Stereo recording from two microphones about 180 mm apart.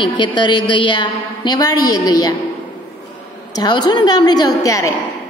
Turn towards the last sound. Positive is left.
turn(degrees=20)  # may be behind; listen again after turning